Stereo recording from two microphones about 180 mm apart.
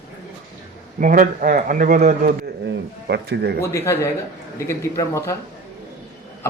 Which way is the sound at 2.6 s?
70° right (ahead or behind).